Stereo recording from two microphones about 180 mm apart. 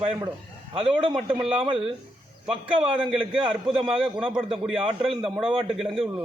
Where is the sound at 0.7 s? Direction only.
30° right (ahead or behind).